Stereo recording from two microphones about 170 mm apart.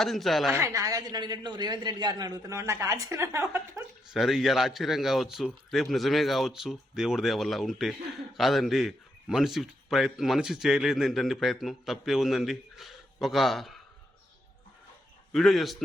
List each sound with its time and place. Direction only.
0.0 s speech: centre (ahead or behind)
0.5 s a man's voice: 20° right (ahead or behind)
4.1 s speech: centre (ahead or behind)
15.3 s speech: centre (ahead or behind)